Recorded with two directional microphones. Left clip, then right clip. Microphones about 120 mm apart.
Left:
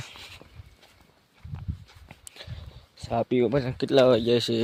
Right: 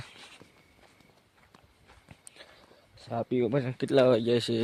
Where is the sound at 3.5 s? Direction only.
25° left (ahead or behind).